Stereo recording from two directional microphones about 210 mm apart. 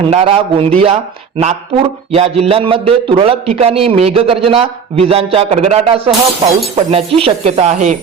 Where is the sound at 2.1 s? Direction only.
30° right (ahead or behind).